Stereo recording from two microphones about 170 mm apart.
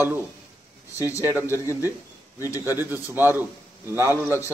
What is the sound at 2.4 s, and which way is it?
Speech, 20° left (ahead or behind).